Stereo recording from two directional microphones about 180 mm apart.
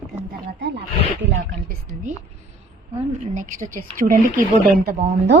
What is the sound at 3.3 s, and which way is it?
Speech, 45° right (ahead or behind).